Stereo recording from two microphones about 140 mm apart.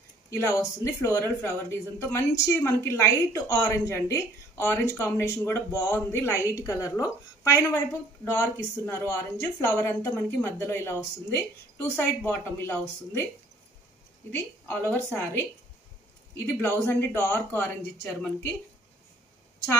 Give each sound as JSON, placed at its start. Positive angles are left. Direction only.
{"t": 0.3, "sound": "a woman's voice", "side_deg": 20}
{"t": 14.3, "sound": "a woman's voice", "side_deg": 10}